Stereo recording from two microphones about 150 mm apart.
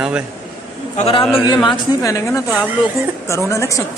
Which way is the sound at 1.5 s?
25° left (ahead or behind).